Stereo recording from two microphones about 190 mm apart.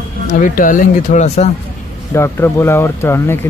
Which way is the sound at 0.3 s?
45° left (ahead or behind).